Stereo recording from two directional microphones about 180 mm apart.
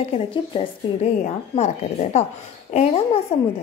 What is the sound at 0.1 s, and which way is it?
A woman's voice, 30° left (ahead or behind).